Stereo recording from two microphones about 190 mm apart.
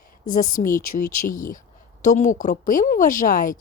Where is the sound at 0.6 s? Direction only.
45° left (ahead or behind).